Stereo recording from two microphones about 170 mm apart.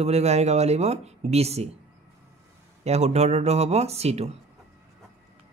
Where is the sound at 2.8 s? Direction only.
40° right (ahead or behind).